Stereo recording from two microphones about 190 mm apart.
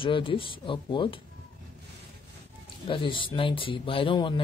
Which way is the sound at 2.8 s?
25° left (ahead or behind).